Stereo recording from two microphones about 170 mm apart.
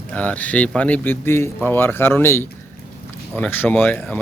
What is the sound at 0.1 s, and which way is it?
Speech, 10° left (ahead or behind).